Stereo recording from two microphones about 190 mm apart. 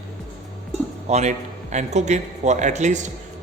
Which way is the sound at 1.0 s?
35° right (ahead or behind).